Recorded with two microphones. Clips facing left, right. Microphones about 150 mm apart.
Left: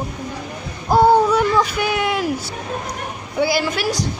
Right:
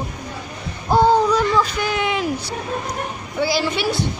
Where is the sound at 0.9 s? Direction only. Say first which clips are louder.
Left 2 dB; 5° left (ahead or behind).